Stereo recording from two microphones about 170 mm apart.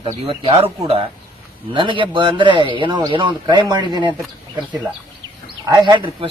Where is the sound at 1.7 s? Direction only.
30° right (ahead or behind).